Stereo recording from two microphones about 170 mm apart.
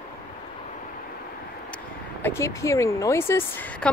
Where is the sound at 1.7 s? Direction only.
15° left (ahead or behind).